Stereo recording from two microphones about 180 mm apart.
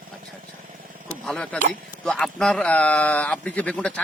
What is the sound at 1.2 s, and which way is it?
Speech, 5° left (ahead or behind).